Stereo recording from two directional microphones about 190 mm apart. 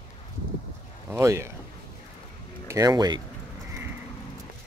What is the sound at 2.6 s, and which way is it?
Speech, 15° right (ahead or behind).